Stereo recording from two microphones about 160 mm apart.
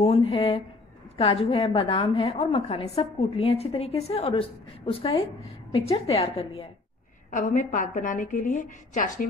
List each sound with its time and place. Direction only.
0.0 s a woman's voice: 40° left (ahead or behind)
7.2 s a woman's voice: 55° left (ahead or behind)